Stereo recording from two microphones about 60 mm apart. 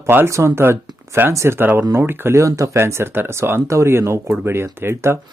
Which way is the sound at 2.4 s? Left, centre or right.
Right.